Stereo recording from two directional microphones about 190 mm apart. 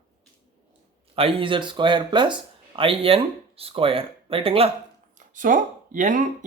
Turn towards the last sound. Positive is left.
turn(degrees=-45)  # may be behind; listen again after turning